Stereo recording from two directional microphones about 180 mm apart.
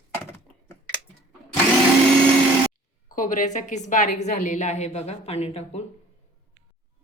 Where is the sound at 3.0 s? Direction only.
50° left (ahead or behind).